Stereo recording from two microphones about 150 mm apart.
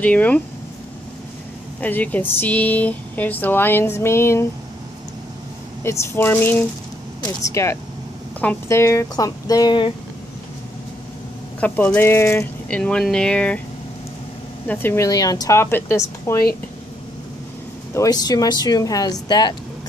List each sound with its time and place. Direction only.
0.0 s speech: 10° left (ahead or behind)
1.8 s speech: 10° left (ahead or behind)
5.9 s speech: 15° left (ahead or behind); by 9.9 s 30° left (ahead or behind)
11.6 s speech: 10° left (ahead or behind)
14.7 s speech: 15° left (ahead or behind)
17.9 s speech: 25° left (ahead or behind)